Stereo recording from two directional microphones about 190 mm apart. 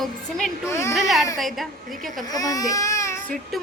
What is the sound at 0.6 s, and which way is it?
Speech, 15° left (ahead or behind).